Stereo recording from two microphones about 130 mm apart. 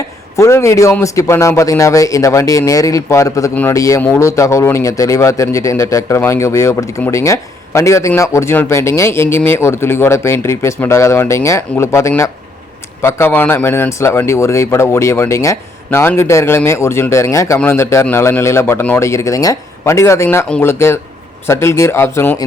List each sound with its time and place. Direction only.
0.3 s a man's voice: 25° left (ahead or behind)
3.5 s speech: 15° left (ahead or behind)
3.8 s a man's voice: 25° left (ahead or behind)